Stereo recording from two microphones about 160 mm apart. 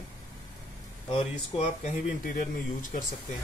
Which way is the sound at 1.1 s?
40° left (ahead or behind).